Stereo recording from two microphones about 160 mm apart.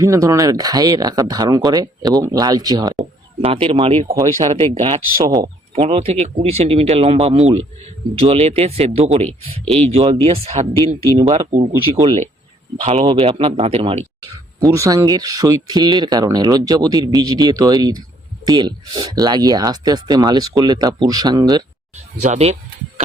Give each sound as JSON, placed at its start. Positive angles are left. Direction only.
{"t": 0.0, "sound": "speech", "side_deg": -20}
{"t": 3.0, "sound": "speech", "side_deg": -35}
{"t": 5.2, "sound": "speech", "side_deg": -25}
{"t": 5.8, "sound": "speech", "side_deg": -35}
{"t": 11.7, "sound": "speech", "side_deg": -20}
{"t": 12.8, "sound": "speech", "side_deg": -40}
{"t": 14.6, "sound": "speech", "side_deg": -20}
{"t": 22.2, "sound": "speech", "side_deg": -45}